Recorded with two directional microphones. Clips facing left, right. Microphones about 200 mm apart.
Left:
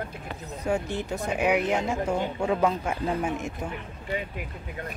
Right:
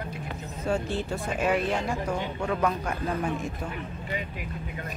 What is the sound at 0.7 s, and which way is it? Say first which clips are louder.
Speech: even; 15° left (ahead or behind).